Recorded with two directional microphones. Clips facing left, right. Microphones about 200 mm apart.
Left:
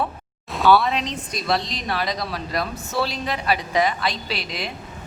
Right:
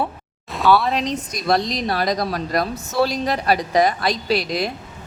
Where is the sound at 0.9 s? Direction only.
40° right (ahead or behind).